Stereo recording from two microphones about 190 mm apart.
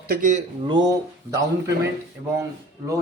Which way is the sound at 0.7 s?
20° right (ahead or behind).